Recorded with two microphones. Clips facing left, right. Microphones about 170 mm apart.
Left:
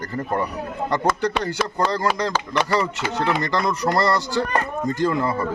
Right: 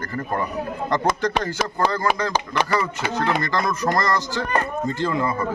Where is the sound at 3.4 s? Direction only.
15° left (ahead or behind).